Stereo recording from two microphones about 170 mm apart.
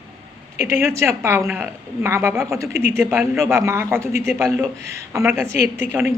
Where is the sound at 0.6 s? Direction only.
15° right (ahead or behind).